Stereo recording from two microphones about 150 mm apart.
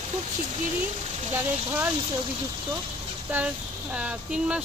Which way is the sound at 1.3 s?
15° right (ahead or behind).